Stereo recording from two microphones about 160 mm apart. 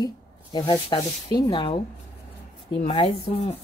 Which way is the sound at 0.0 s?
25° left (ahead or behind).